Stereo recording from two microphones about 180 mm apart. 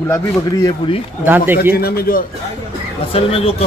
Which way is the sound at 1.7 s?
60° left (ahead or behind).